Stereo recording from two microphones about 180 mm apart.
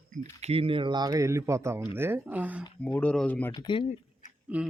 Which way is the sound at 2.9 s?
5° left (ahead or behind).